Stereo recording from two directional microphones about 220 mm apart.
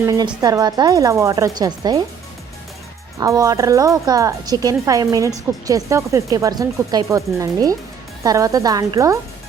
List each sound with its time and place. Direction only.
0.4 s a woman's voice: 20° right (ahead or behind)
3.2 s a woman's voice: 15° right (ahead or behind)